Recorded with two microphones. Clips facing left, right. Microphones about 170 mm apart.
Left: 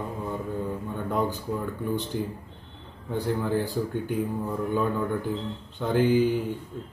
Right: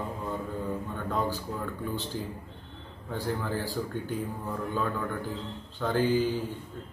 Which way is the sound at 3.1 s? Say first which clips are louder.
Left 5 dB; 20° left (ahead or behind).